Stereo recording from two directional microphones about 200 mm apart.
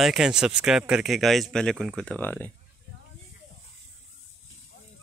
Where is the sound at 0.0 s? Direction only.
Centre (ahead or behind).